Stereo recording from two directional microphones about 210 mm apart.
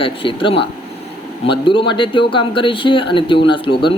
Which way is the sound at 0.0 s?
25° left (ahead or behind).